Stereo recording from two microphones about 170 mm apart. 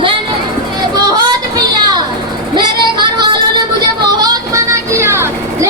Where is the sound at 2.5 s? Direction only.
25° right (ahead or behind).